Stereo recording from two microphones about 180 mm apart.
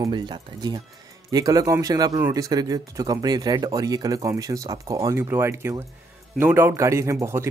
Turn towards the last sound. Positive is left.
turn(degrees=-15)  # may be behind; listen again after turning